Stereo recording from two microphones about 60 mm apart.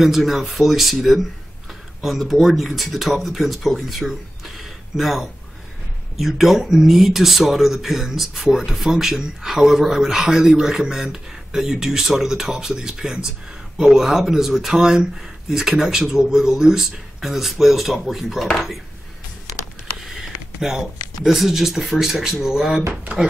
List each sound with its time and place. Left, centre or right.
0.0 s speech: centre
20.0 s a sound: centre
21.2 s speech: centre